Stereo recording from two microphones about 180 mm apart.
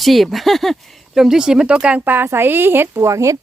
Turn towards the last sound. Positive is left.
turn(degrees=-15)  # may be behind; listen again after turning